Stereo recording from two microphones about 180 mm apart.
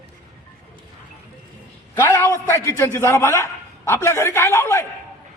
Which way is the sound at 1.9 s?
15° left (ahead or behind).